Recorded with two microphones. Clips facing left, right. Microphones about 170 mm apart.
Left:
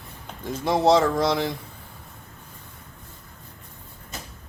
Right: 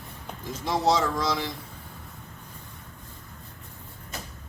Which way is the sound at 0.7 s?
60° left (ahead or behind).